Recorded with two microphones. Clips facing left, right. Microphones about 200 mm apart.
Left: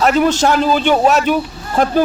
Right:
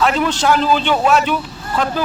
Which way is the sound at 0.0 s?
45° left (ahead or behind).